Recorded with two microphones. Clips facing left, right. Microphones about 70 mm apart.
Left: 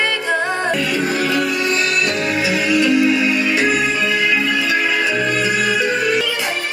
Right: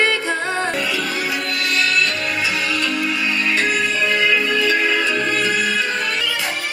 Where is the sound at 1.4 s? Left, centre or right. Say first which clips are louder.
Left 3 dB; centre.